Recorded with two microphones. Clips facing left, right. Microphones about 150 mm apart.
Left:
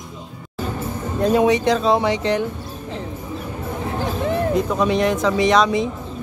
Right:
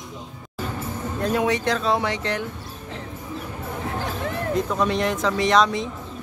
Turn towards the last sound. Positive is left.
turn(degrees=5)  # may be behind; listen again after turning